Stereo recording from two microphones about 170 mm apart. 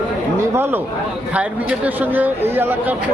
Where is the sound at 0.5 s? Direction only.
10° right (ahead or behind).